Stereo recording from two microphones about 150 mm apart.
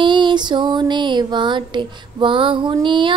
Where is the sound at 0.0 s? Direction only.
30° right (ahead or behind).